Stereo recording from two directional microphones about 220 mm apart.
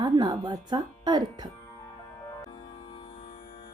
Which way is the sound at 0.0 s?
20° right (ahead or behind).